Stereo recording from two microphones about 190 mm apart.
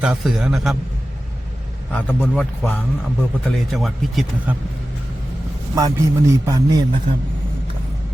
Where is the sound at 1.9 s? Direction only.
10° left (ahead or behind).